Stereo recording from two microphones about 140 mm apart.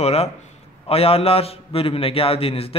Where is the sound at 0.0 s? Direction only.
50° left (ahead or behind).